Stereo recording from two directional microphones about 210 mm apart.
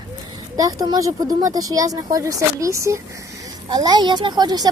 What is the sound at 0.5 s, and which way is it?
A woman's voice, 15° right (ahead or behind).